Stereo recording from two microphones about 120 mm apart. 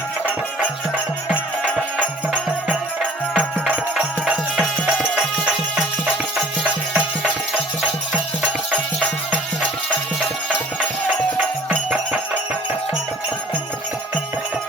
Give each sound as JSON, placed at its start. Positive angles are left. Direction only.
{"t": 2.0, "sound": "music", "side_deg": -10}